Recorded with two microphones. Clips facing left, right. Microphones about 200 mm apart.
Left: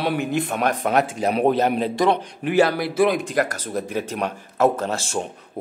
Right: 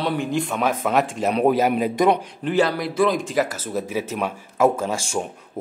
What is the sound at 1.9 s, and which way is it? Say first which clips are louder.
Speech: right 2 dB; 20° right (ahead or behind).